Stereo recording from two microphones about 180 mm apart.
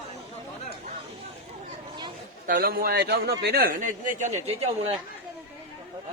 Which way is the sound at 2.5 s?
50° right (ahead or behind).